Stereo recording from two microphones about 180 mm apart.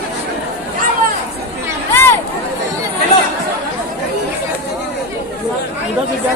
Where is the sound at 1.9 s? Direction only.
10° left (ahead or behind).